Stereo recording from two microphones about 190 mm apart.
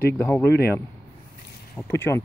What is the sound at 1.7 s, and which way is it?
Speech, 10° left (ahead or behind).